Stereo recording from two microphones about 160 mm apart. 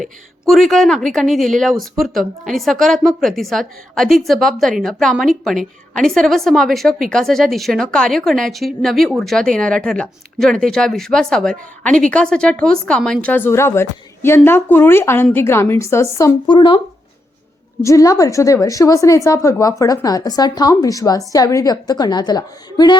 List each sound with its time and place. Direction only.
0.0 s a woman's voice: centre (ahead or behind); by 16.3 s 20° left (ahead or behind)
16.5 s a woman's voice: 30° left (ahead or behind)
17.8 s a woman's voice: 20° left (ahead or behind)